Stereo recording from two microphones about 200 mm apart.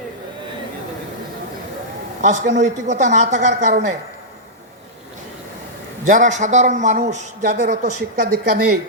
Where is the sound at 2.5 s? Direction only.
35° right (ahead or behind).